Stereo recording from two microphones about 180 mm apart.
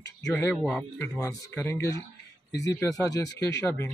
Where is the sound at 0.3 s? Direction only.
10° left (ahead or behind).